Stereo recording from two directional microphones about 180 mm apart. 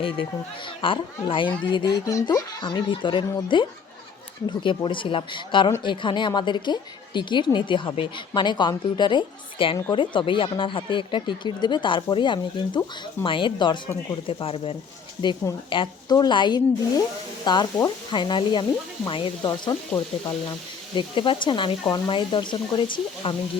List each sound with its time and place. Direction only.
0.8 s a woman's voice: 30° left (ahead or behind)
20.9 s a woman's voice: 25° left (ahead or behind)